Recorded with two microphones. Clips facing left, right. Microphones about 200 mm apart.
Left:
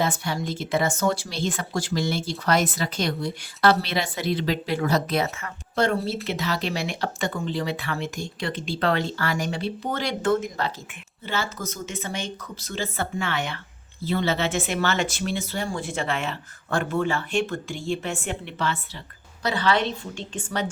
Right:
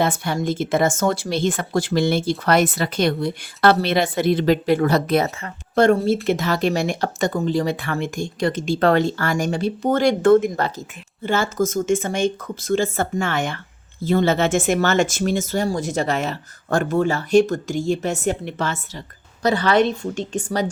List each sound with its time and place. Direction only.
0.0 s speech: 55° right (ahead or behind)